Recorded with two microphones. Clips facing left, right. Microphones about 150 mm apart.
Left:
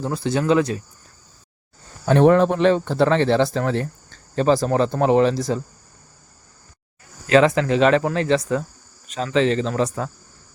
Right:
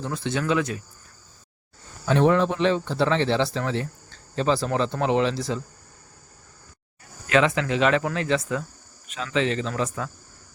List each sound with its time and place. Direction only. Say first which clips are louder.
0.0 s speech: left 5 dB; 35° left (ahead or behind)
2.0 s speech: left 5 dB; 50° left (ahead or behind)
7.3 s speech: left 6 dB; 35° left (ahead or behind)